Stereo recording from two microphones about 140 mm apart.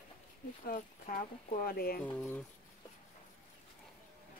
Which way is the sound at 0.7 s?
85° left.